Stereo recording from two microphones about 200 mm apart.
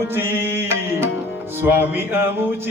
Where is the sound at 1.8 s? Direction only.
10° right (ahead or behind).